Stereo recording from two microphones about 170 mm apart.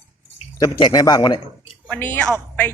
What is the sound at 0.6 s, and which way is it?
Speech, 25° left (ahead or behind).